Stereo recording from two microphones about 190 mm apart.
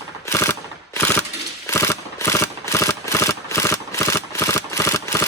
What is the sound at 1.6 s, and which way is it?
Mechanisms, 15° left (ahead or behind).